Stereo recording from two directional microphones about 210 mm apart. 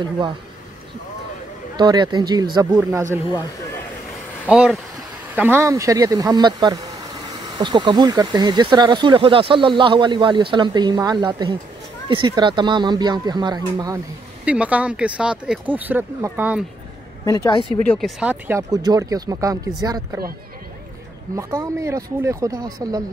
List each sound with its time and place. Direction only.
1.8 s speech: 20° right (ahead or behind)
4.5 s speech: 5° right (ahead or behind)
14.4 s speech: 5° right (ahead or behind)
17.2 s a woman's voice: 15° left (ahead or behind)
17.8 s speech: centre (ahead or behind); by 20.2 s 15° right (ahead or behind)
21.4 s speech: 15° right (ahead or behind)